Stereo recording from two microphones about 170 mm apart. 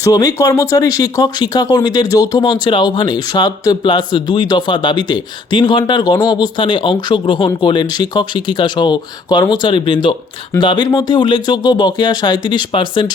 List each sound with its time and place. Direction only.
0.0 s speech: 20° left (ahead or behind)